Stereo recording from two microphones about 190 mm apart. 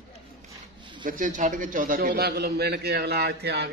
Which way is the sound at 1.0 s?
45° right (ahead or behind).